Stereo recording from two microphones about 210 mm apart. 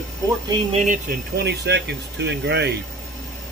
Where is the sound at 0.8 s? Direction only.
40° right (ahead or behind).